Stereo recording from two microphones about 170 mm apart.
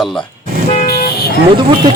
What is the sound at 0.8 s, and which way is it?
Vehicle, 65° left (ahead or behind).